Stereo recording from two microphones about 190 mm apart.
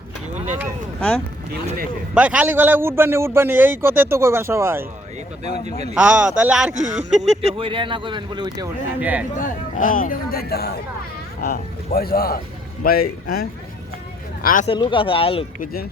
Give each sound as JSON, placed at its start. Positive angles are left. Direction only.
{"t": 0.9, "sound": "speech", "side_deg": 5}
{"t": 2.1, "sound": "a man's voice", "side_deg": -5}
{"t": 5.9, "sound": "speech", "side_deg": -5}
{"t": 6.7, "sound": "speech", "side_deg": -40}
{"t": 9.0, "sound": "a man's voice", "side_deg": -10}
{"t": 9.4, "sound": "speech", "side_deg": 45}
{"t": 14.7, "sound": "speech", "side_deg": 25}
{"t": 15.6, "sound": "speech", "side_deg": 50}